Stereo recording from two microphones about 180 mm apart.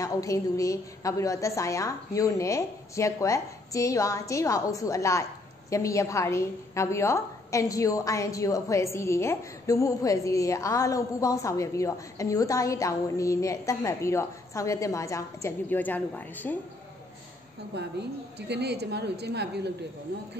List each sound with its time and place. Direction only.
0.0 s a woman's voice: 20° left (ahead or behind)
17.7 s a woman's voice: 70° right (ahead or behind)